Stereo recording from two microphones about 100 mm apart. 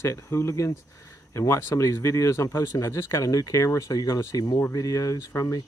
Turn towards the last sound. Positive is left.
turn(degrees=35)  # may be behind; listen again after turning